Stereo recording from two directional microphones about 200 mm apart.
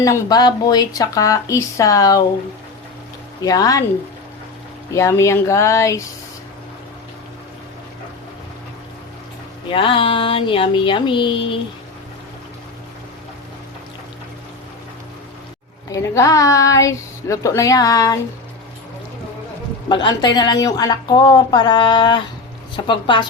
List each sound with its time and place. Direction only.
0.0 s speech: 20° left (ahead or behind)
3.4 s speech: 20° left (ahead or behind)
4.9 s speech: 15° left (ahead or behind)
9.6 s speech: 25° left (ahead or behind)
15.9 s speech: 15° left (ahead or behind)
19.9 s speech: 20° left (ahead or behind)